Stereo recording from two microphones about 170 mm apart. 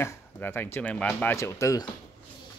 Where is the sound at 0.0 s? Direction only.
10° left (ahead or behind).